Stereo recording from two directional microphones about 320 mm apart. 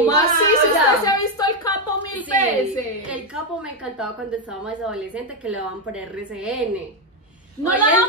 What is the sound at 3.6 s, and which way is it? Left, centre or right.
A woman's voice, centre.